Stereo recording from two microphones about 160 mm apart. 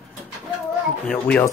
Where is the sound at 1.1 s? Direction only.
10° left (ahead or behind).